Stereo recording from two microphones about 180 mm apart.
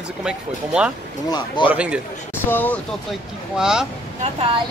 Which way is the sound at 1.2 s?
25° left (ahead or behind).